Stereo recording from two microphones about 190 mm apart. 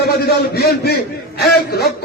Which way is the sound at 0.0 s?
55° left (ahead or behind).